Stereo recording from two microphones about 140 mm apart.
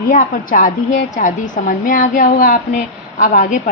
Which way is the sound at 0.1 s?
70° left (ahead or behind).